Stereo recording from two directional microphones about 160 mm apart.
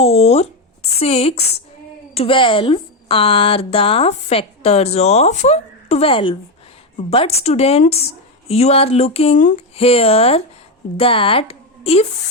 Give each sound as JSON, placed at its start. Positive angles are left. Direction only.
{"t": 0.0, "sound": "a woman's voice", "side_deg": 40}
{"t": 9.7, "sound": "a woman's voice", "side_deg": 35}